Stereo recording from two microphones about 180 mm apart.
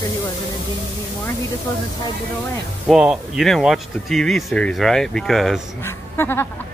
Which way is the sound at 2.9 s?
Centre (ahead or behind).